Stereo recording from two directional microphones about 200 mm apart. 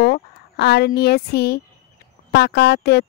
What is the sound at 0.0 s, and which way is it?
Speech, 55° left (ahead or behind).